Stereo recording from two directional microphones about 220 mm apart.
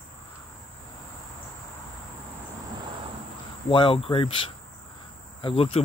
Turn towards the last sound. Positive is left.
turn(degrees=25)  # may be behind; listen again after turning